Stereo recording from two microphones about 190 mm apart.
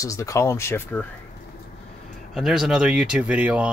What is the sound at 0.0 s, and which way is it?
Speech, 15° left (ahead or behind).